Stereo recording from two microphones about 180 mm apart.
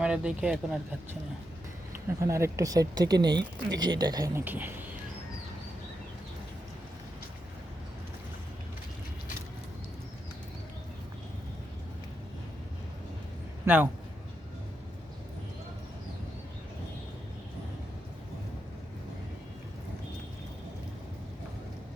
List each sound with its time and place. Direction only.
0.0 s speech: 5° right (ahead or behind)
2.2 s speech: 15° right (ahead or behind)
4.4 s speech: 10° right (ahead or behind)
13.7 s speech: 10° right (ahead or behind)